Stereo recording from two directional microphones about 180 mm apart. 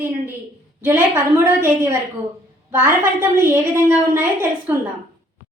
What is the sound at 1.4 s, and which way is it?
Speech, 15° right (ahead or behind).